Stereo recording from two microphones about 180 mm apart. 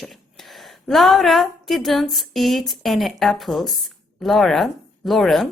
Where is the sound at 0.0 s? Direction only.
Centre (ahead or behind).